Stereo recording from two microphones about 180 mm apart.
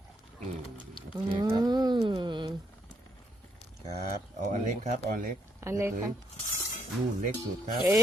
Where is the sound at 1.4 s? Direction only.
25° right (ahead or behind).